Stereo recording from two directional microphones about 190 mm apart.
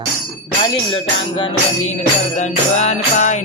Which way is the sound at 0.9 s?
25° left (ahead or behind).